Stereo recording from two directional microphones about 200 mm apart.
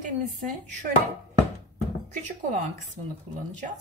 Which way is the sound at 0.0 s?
40° right (ahead or behind).